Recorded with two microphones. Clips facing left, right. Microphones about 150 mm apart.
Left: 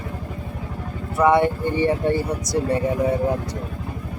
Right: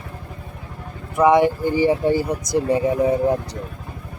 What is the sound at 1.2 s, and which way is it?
Speech, 10° right (ahead or behind).